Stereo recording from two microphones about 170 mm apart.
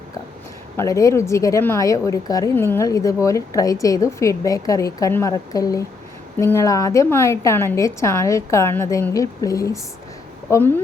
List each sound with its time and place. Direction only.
0.8 s a woman's voice: 20° left (ahead or behind)